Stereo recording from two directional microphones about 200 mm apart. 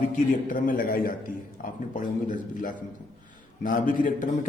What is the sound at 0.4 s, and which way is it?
Speech, 45° left (ahead or behind).